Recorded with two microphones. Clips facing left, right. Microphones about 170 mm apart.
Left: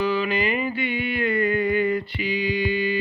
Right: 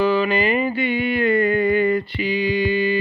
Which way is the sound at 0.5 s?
35° right (ahead or behind).